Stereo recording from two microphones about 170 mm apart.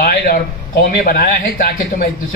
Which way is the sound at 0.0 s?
60° left (ahead or behind).